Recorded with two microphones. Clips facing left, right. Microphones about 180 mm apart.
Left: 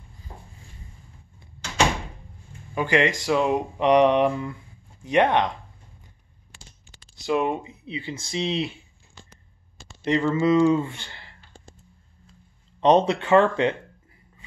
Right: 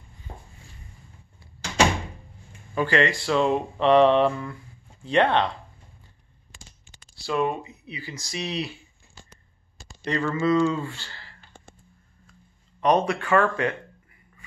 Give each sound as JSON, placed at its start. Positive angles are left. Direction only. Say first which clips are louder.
{"t": 2.7, "sound": "speech", "louder": "left 1 dB", "side_deg": 15}
{"t": 7.2, "sound": "speech", "louder": "left 2 dB", "side_deg": 20}
{"t": 10.0, "sound": "speech", "louder": "left 3 dB", "side_deg": 20}
{"t": 12.8, "sound": "speech", "louder": "left 3 dB", "side_deg": 25}